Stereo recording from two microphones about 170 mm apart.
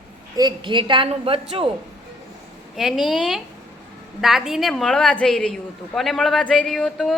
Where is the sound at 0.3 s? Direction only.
25° right (ahead or behind).